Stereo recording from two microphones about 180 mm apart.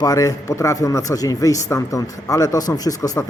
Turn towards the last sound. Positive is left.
turn(degrees=20)  # may be behind; listen again after turning